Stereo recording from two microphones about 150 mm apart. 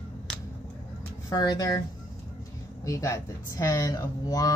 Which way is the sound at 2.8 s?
20° left (ahead or behind).